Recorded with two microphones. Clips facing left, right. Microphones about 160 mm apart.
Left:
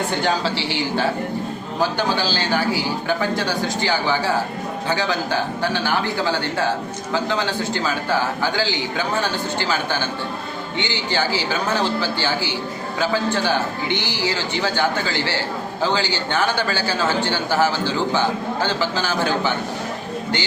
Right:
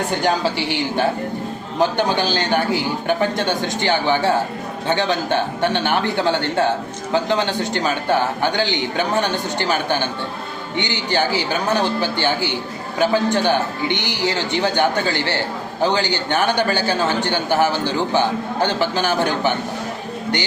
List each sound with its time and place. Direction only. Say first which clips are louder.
1.8 s a man's voice: right 3 dB; 20° right (ahead or behind)